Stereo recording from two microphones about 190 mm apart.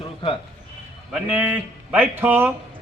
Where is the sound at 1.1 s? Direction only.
10° right (ahead or behind).